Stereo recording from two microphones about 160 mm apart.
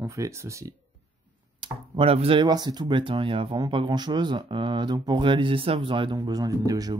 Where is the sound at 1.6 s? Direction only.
35° right (ahead or behind).